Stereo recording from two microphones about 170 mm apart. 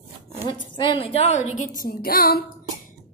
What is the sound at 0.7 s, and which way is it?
A woman's voice, 30° left (ahead or behind).